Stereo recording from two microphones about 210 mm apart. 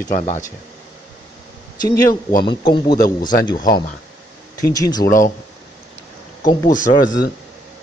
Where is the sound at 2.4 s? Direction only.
20° left (ahead or behind).